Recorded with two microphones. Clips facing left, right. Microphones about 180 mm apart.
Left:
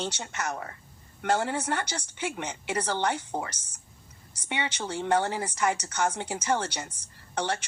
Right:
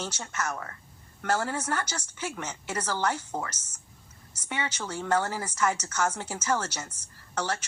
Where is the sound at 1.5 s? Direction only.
65° left (ahead or behind).